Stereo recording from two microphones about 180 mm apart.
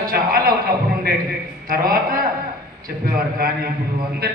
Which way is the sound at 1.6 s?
55° right (ahead or behind).